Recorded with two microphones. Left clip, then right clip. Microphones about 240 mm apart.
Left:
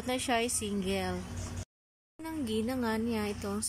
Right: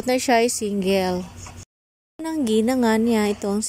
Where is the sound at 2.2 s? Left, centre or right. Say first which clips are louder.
Right 13 dB; right.